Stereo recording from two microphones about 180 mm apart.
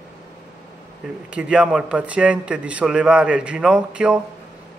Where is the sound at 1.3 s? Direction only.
5° right (ahead or behind).